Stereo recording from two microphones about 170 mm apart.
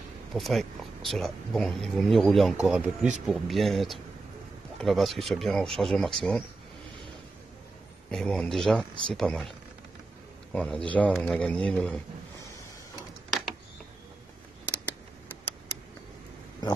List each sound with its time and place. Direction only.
0.3 s speech: centre (ahead or behind)
8.1 s speech: 5° left (ahead or behind)
10.5 s speech: 5° left (ahead or behind)
16.6 s a sound: 25° left (ahead or behind)